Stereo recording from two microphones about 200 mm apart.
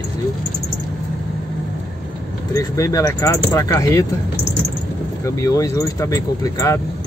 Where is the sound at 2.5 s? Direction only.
15° left (ahead or behind).